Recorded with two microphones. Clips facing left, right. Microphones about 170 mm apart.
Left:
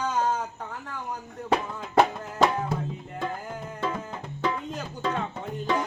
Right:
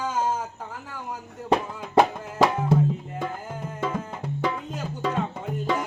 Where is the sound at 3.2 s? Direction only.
10° right (ahead or behind).